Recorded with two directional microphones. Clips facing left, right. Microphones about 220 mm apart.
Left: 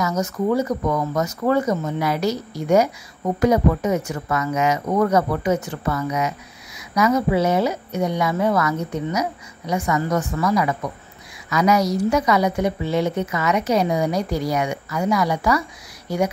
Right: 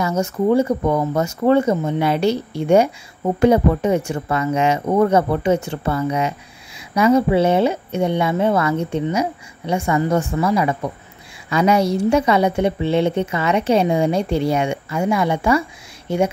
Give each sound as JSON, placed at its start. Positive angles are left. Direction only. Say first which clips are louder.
{"t": 0.0, "sound": "a woman's voice", "louder": "right 3 dB", "side_deg": -30}